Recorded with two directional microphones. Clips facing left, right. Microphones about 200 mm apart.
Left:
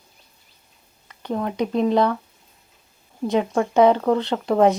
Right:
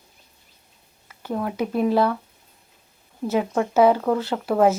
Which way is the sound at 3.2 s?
5° right (ahead or behind).